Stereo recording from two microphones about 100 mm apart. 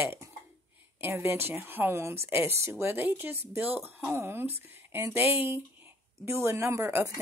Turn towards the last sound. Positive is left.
turn(degrees=-30)  # may be behind; listen again after turning